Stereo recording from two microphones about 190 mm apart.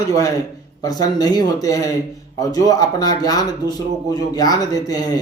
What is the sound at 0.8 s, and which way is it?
Speech, 20° left (ahead or behind).